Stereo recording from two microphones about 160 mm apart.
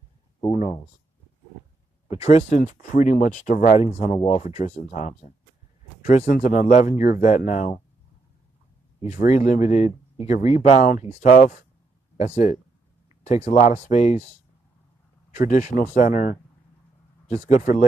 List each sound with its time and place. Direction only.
0.5 s a sound: 45° left (ahead or behind)
2.0 s speech: 40° left (ahead or behind)
9.0 s speech: 45° left (ahead or behind)
15.3 s speech: 50° left (ahead or behind)
17.3 s speech: 45° left (ahead or behind)